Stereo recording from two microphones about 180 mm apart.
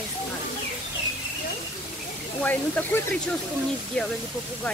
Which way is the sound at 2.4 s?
10° left (ahead or behind).